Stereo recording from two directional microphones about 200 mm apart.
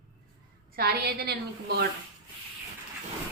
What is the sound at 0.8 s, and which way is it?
A woman's voice, 50° right (ahead or behind).